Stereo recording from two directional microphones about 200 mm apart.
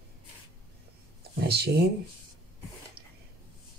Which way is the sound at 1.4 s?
55° right (ahead or behind).